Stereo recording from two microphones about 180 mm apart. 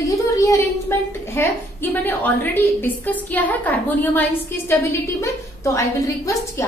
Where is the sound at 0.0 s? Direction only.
20° left (ahead or behind).